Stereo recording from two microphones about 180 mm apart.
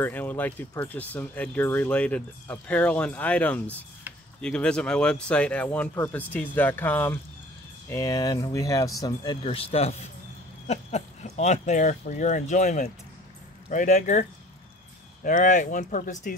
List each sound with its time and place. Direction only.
0.0 s speech: 10° left (ahead or behind); by 14.2 s 45° left (ahead or behind)
15.2 s speech: 45° left (ahead or behind)